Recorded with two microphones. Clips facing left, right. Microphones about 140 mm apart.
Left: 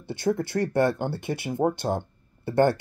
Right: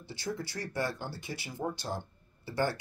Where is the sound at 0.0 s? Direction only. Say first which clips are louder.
Left 12 dB; 55° left (ahead or behind).